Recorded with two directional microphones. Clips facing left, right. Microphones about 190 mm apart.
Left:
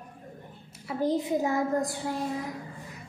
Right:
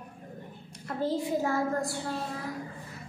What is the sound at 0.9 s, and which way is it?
A woman's voice, 15° left (ahead or behind).